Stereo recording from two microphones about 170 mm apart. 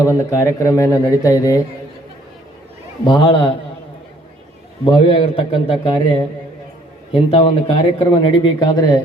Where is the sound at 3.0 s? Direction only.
30° left (ahead or behind).